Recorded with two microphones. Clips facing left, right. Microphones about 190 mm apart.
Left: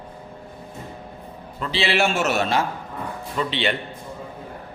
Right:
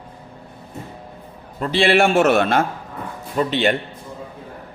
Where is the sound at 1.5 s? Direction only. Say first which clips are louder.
Right 6 dB; 45° right (ahead or behind).